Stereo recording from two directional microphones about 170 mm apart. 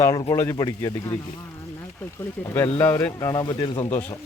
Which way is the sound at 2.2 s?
10° left (ahead or behind).